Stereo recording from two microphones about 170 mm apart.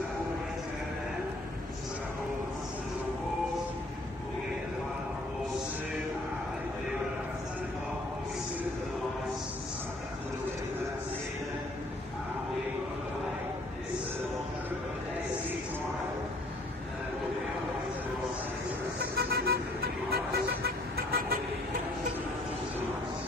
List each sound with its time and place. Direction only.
18.9 s vehicle: 70° right (ahead or behind)